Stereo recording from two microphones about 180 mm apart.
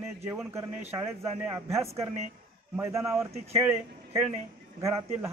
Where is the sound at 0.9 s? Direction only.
15° right (ahead or behind).